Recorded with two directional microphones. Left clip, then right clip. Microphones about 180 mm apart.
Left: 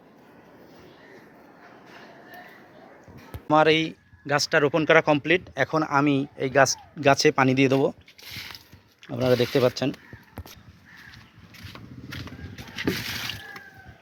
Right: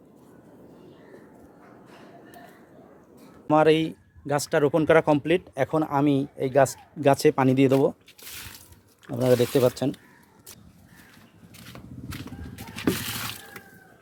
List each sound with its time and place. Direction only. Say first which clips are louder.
3.4 s speech: even; 25° right (ahead or behind)
9.0 s speech: right 1 dB; 15° right (ahead or behind)